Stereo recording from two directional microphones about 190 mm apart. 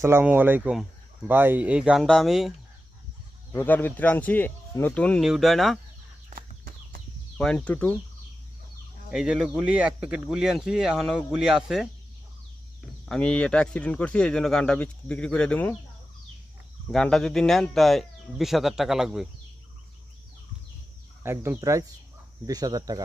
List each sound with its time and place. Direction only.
0.0 s speech: 10° right (ahead or behind)
3.5 s speech: 10° left (ahead or behind)
6.3 s a sound: 50° right (ahead or behind)
7.3 s speech: 5° left (ahead or behind)
9.0 s speech: 5° right (ahead or behind)
13.1 s speech: 5° left (ahead or behind)
16.9 s speech: 5° left (ahead or behind)
21.2 s speech: 15° right (ahead or behind)